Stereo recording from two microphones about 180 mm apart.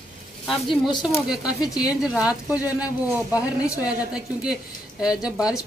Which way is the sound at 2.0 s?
5° right (ahead or behind).